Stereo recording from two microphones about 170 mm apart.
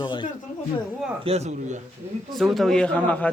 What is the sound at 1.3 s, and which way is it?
Speech, 35° right (ahead or behind).